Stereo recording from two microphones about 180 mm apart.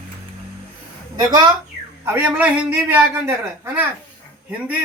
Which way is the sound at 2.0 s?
10° right (ahead or behind).